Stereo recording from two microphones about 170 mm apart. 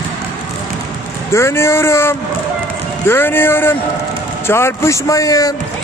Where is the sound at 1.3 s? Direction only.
15° left (ahead or behind).